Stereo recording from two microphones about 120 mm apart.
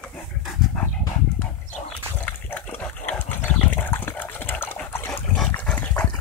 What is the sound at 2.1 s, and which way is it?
Liquid, 15° left (ahead or behind).